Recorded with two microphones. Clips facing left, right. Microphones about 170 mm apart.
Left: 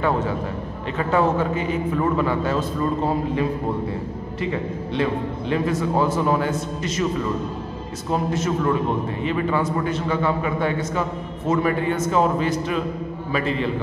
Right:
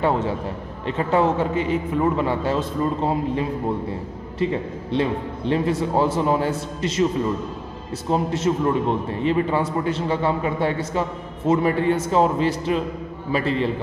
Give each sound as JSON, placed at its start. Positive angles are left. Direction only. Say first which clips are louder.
{"t": 0.9, "sound": "a man's voice", "louder": "even", "side_deg": -25}
{"t": 8.1, "sound": "a man's voice", "louder": "right 2 dB", "side_deg": -30}